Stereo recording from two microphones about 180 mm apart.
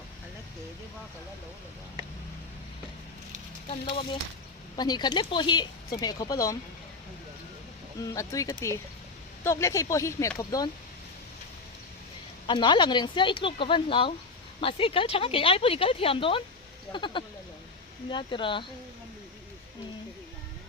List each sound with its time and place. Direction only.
3.7 s speech: 30° left (ahead or behind)
8.0 s speech: 15° left (ahead or behind)
12.5 s speech: 25° left (ahead or behind)